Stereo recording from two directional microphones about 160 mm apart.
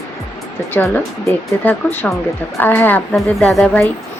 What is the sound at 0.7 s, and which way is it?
Speech, 15° left (ahead or behind).